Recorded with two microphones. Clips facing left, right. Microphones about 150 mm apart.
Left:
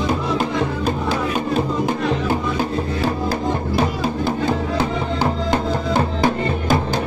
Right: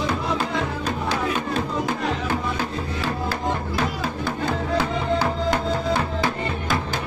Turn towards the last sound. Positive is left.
turn(degrees=25)  # may be behind; listen again after turning